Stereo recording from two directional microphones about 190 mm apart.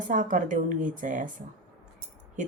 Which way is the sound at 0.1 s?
45° right (ahead or behind).